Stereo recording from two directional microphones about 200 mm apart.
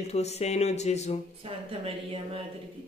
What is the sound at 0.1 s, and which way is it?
A woman's voice, 35° left (ahead or behind).